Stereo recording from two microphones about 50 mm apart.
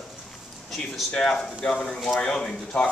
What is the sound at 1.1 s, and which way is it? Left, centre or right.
Speech, centre.